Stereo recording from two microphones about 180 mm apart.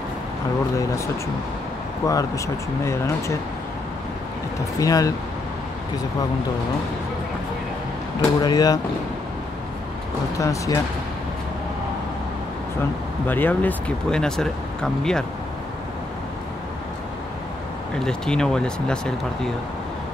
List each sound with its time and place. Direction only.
0.7 s speech: 15° left (ahead or behind)
4.7 s speech: 20° left (ahead or behind)
8.2 s speech: 25° left (ahead or behind)
10.3 s speech: 15° left (ahead or behind)
13.3 s speech: 10° left (ahead or behind)
17.9 s speech: 5° left (ahead or behind)